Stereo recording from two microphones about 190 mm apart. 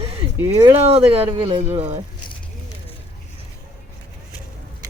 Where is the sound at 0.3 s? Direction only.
15° right (ahead or behind).